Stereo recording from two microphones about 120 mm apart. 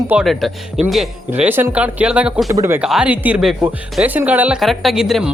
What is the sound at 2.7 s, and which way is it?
Speech, 5° right (ahead or behind).